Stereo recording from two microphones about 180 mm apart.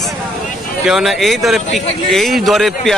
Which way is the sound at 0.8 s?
Centre (ahead or behind).